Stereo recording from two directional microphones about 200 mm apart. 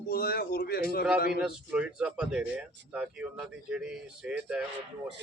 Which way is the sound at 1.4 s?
5° right (ahead or behind).